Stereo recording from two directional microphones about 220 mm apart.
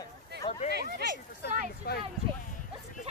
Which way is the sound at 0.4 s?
25° left (ahead or behind).